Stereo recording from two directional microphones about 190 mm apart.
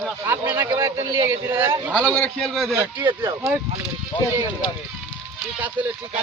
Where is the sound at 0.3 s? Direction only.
15° right (ahead or behind).